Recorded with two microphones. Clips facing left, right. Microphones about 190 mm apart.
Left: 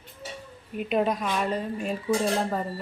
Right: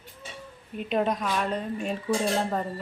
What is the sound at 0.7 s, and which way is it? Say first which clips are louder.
Speech: left 1 dB; 5° left (ahead or behind).